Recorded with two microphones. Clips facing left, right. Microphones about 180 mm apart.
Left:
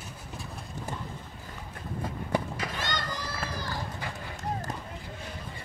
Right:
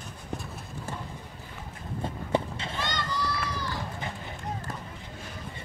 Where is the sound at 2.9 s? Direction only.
45° left (ahead or behind).